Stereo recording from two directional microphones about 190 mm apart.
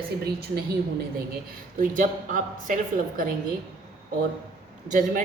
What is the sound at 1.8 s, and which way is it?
Speech, 45° right (ahead or behind).